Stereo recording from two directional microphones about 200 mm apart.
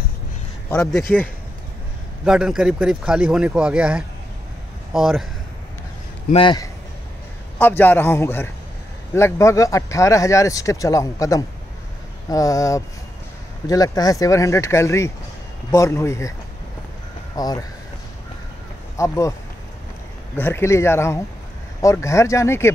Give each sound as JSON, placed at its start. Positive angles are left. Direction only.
{"t": 0.7, "sound": "speech", "side_deg": 5}
{"t": 2.2, "sound": "a man's voice", "side_deg": -5}
{"t": 6.3, "sound": "speech", "side_deg": 20}
{"t": 7.5, "sound": "speech", "side_deg": 10}
{"t": 17.4, "sound": "speech", "side_deg": 20}
{"t": 18.9, "sound": "speech", "side_deg": 15}
{"t": 20.3, "sound": "speech", "side_deg": 10}